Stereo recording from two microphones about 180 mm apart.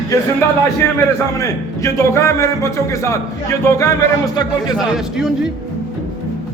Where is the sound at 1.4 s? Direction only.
15° left (ahead or behind).